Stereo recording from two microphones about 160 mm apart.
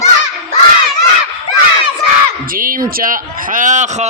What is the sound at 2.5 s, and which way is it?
A man's voice, 60° right (ahead or behind).